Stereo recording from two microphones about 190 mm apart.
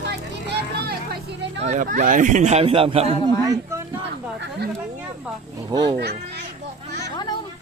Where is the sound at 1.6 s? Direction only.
40° right (ahead or behind).